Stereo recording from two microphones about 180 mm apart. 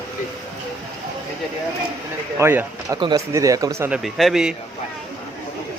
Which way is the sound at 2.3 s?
15° right (ahead or behind).